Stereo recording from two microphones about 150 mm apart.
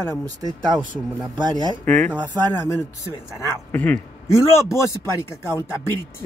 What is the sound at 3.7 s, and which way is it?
Speech, 10° left (ahead or behind).